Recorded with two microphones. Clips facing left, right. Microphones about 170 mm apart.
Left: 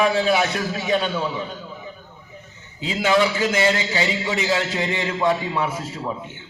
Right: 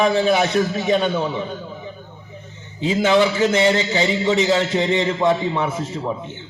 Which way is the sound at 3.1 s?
25° right (ahead or behind).